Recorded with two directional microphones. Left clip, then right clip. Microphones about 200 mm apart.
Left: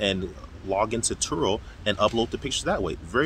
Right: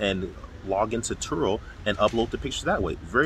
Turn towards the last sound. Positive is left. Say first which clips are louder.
# right 1 dB
turn(degrees=5)  # may be behind; listen again after turning